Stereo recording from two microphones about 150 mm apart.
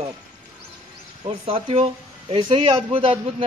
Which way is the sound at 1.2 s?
40° right (ahead or behind).